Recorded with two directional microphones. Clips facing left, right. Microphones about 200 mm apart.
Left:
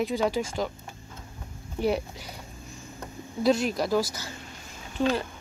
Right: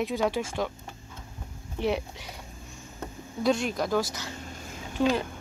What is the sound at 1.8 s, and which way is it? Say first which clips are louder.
Speech: left 2 dB; centre (ahead or behind).